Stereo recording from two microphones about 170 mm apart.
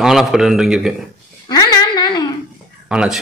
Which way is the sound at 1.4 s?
20° left (ahead or behind).